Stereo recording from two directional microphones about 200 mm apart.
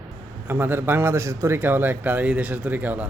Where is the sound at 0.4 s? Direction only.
10° right (ahead or behind).